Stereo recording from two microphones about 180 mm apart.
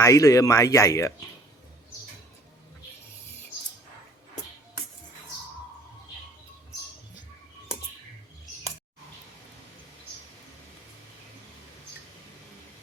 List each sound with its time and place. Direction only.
0.0 s speech: 15° left (ahead or behind)